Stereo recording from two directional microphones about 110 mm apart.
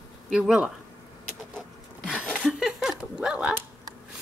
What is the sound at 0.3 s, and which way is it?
Speech, 10° right (ahead or behind).